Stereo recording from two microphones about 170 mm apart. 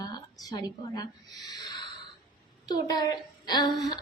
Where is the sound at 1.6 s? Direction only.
25° left (ahead or behind).